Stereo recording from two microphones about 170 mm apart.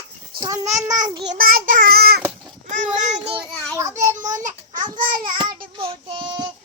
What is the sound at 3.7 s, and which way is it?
Child singing, 20° right (ahead or behind).